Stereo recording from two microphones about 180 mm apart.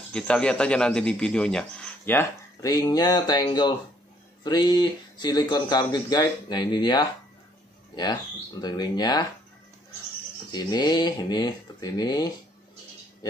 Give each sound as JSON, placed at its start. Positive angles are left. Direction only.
{"t": 0.1, "sound": "a man's voice", "side_deg": 5}
{"t": 10.5, "sound": "speech", "side_deg": 20}